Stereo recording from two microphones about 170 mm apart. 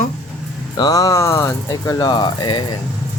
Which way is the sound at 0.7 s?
25° left (ahead or behind).